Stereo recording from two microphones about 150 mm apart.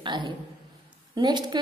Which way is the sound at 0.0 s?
30° right (ahead or behind).